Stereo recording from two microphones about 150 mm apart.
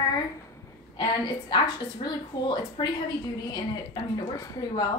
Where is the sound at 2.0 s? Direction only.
30° left (ahead or behind).